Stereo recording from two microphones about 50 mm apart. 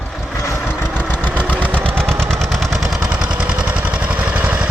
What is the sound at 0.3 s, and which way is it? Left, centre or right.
Vehicle, left.